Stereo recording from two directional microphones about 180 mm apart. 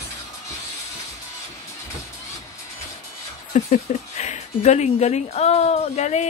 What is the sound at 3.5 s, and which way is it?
Speech, 40° left (ahead or behind).